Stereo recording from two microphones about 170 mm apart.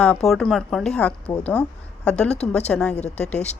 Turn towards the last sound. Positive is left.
turn(degrees=5)  # may be behind; listen again after turning